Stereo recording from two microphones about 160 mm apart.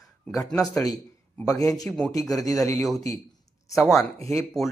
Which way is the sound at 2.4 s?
20° left (ahead or behind).